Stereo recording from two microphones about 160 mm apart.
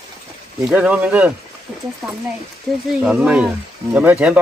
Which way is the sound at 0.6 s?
5° right (ahead or behind).